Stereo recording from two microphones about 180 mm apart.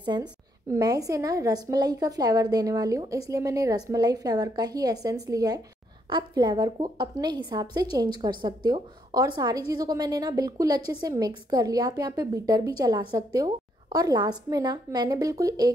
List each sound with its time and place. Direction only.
0.0 s a woman's voice: 25° right (ahead or behind)